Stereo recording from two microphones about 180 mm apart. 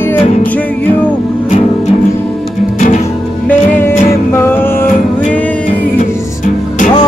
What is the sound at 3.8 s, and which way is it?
Music, 15° left (ahead or behind).